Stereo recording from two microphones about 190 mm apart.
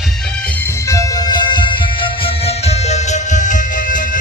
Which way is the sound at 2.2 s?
35° left (ahead or behind).